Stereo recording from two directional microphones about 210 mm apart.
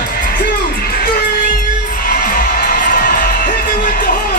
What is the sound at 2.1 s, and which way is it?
Music, 40° left (ahead or behind).